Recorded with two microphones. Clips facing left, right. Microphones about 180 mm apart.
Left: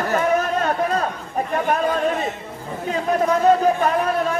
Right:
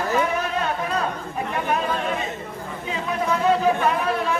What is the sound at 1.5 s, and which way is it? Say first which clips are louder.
Chatter: left 4 dB; 45° left (ahead or behind).